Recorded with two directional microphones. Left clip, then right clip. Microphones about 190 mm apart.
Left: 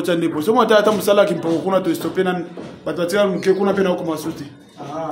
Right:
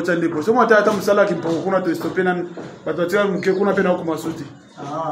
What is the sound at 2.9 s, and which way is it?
A man's voice, 15° left (ahead or behind).